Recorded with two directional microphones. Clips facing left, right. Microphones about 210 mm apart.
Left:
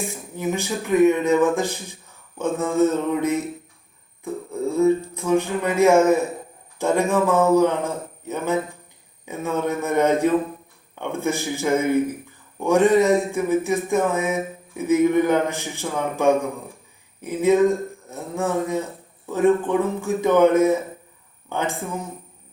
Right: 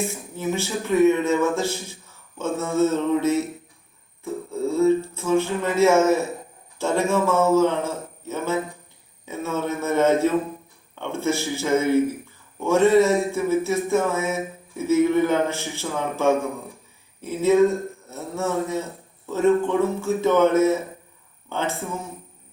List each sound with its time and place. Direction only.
0.3 s speech: 15° left (ahead or behind)